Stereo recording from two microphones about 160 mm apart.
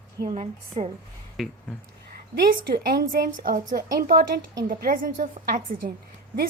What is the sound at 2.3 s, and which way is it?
A woman's voice, 75° right (ahead or behind).